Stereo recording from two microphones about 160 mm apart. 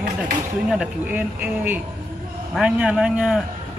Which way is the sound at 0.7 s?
5° right (ahead or behind).